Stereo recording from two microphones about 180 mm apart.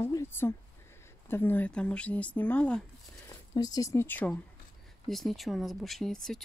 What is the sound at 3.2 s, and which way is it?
Speech, 20° left (ahead or behind).